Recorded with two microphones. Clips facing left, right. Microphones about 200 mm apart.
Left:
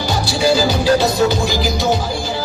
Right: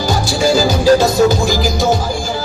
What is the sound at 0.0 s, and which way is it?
Music, 45° right (ahead or behind).